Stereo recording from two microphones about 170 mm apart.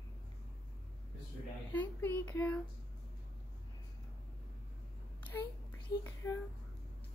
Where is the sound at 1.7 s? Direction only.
10° left (ahead or behind).